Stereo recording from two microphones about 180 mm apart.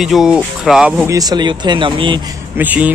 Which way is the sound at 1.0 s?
20° right (ahead or behind).